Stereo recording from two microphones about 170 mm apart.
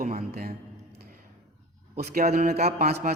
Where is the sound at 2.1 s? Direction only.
60° right (ahead or behind).